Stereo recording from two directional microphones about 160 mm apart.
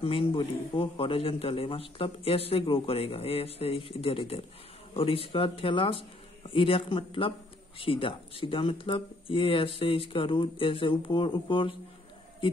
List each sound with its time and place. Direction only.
0.0 s a man's voice: 35° left (ahead or behind)